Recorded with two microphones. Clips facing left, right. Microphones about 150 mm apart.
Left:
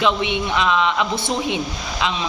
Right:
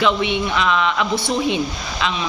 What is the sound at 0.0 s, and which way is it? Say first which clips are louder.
Speech: right 1 dB; 20° left (ahead or behind).